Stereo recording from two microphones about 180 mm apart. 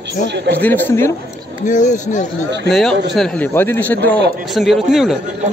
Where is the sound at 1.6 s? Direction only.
45° left (ahead or behind).